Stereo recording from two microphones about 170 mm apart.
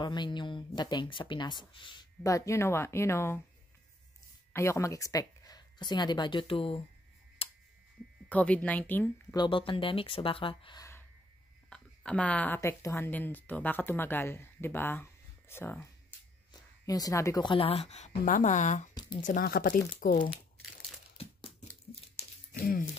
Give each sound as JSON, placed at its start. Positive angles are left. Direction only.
{"t": 0.0, "sound": "speech", "side_deg": 25}
{"t": 4.5, "sound": "speech", "side_deg": 15}
{"t": 7.4, "sound": "a sound", "side_deg": 35}
{"t": 8.3, "sound": "a woman's voice", "side_deg": 10}
{"t": 9.3, "sound": "a woman's voice", "side_deg": 25}
{"t": 10.8, "sound": "a sound", "side_deg": 15}
{"t": 11.7, "sound": "a woman's voice", "side_deg": 5}
{"t": 18.9, "sound": "speech", "side_deg": 25}
{"t": 19.2, "sound": "speech", "side_deg": 55}
{"t": 21.2, "sound": "a sound", "side_deg": 35}
{"t": 22.5, "sound": "speech", "side_deg": 55}